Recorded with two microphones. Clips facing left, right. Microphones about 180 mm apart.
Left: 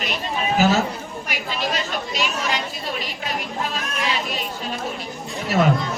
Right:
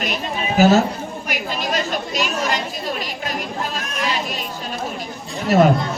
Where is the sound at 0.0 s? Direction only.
45° right (ahead or behind).